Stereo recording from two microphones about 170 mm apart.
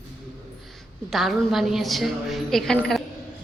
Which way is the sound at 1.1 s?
Centre (ahead or behind).